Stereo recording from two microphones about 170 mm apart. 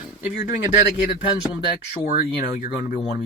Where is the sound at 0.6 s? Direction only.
60° left (ahead or behind).